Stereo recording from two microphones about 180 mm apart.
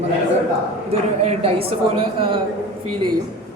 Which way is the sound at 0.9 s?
35° right (ahead or behind).